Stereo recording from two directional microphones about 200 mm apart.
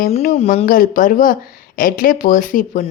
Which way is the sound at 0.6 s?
45° left (ahead or behind).